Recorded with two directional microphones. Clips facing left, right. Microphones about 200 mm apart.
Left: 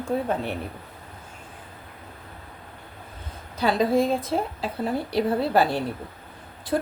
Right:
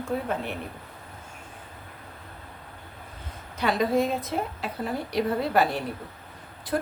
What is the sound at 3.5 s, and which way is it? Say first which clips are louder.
A woman's voice: left 3 dB; 30° left (ahead or behind).